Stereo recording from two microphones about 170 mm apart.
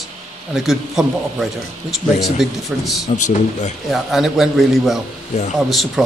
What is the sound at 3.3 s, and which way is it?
Speech, 45° left (ahead or behind).